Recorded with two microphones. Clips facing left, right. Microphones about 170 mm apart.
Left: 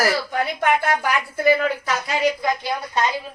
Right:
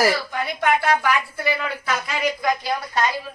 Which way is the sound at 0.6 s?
50° left (ahead or behind).